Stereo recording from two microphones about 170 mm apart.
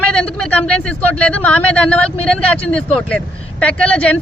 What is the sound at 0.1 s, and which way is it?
Speech, 5° left (ahead or behind).